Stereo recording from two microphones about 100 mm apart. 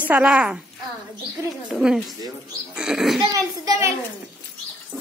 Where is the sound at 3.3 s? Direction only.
35° right (ahead or behind).